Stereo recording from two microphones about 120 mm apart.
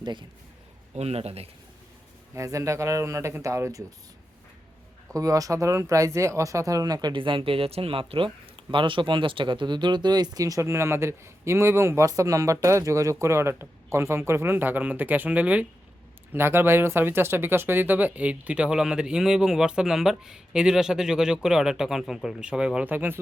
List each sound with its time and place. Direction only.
0.0 s speech: 40° right (ahead or behind)
0.9 s a man's voice: 60° right (ahead or behind)
2.3 s speech: 25° right (ahead or behind)
5.1 s speech: 30° right (ahead or behind)